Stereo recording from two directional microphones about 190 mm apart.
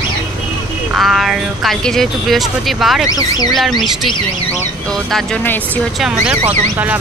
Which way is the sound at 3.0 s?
20° left (ahead or behind).